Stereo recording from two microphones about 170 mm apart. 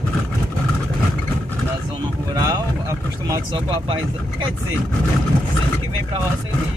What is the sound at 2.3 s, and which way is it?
Vehicle, 20° right (ahead or behind).